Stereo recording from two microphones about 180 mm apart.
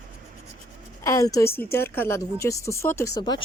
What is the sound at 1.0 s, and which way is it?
A woman's voice, 15° left (ahead or behind).